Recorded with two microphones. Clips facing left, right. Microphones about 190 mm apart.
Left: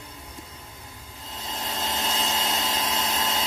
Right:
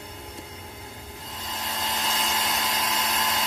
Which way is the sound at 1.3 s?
25° left (ahead or behind).